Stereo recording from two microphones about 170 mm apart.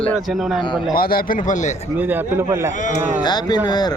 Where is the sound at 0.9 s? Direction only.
60° left (ahead or behind).